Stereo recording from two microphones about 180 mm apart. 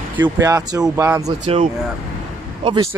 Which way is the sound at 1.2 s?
40° right (ahead or behind).